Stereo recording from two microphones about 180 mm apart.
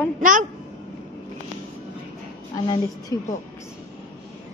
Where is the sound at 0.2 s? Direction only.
45° right (ahead or behind).